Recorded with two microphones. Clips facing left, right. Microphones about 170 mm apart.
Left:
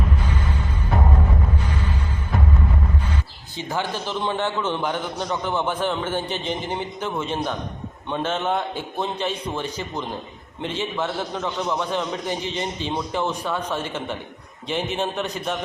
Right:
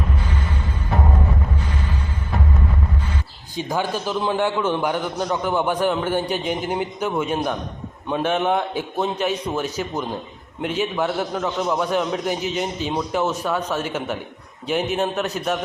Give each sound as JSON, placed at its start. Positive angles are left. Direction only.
{"t": 3.5, "sound": "a man's voice", "side_deg": -15}